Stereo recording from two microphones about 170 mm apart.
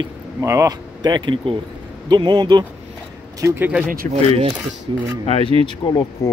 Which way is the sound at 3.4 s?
10° right (ahead or behind).